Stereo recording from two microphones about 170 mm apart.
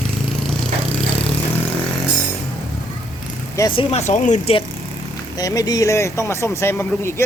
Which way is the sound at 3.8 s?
40° left (ahead or behind).